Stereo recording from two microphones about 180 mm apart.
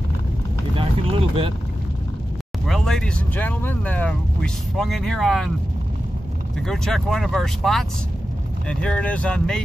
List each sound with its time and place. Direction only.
0.7 s vehicle: 30° right (ahead or behind)
2.6 s speech: centre (ahead or behind)
6.6 s speech: centre (ahead or behind)